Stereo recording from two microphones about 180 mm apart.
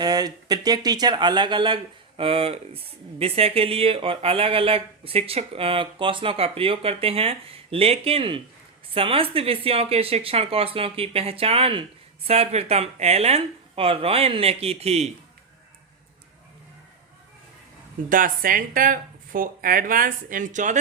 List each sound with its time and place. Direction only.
0.0 s speech: 20° right (ahead or behind)
18.1 s speech: 50° right (ahead or behind)